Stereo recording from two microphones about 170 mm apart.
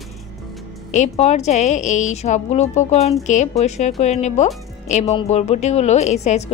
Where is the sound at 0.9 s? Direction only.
40° left (ahead or behind).